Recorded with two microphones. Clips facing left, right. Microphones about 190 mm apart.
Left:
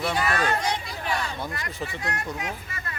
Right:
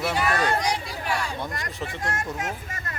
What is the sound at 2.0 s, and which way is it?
Speech, 45° right (ahead or behind).